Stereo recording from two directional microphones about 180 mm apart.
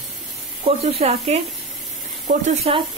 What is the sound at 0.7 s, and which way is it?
Speech, 35° right (ahead or behind).